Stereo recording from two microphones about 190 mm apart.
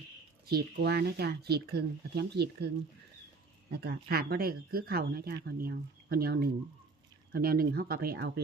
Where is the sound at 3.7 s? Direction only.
55° right (ahead or behind).